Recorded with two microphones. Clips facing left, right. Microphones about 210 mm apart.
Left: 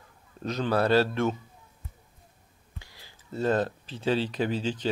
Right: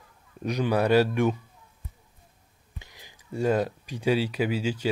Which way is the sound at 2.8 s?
20° right (ahead or behind).